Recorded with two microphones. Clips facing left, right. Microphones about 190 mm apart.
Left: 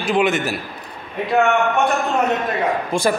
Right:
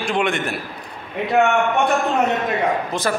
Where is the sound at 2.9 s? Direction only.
10° left (ahead or behind).